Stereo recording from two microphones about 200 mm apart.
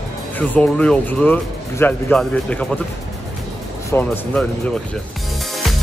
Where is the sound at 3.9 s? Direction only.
10° left (ahead or behind).